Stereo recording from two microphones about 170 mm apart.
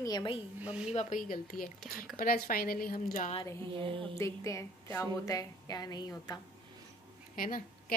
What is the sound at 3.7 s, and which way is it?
Speech, 30° right (ahead or behind).